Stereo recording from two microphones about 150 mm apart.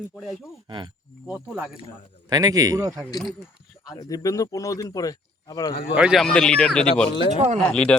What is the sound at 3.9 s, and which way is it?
Speech, 25° left (ahead or behind).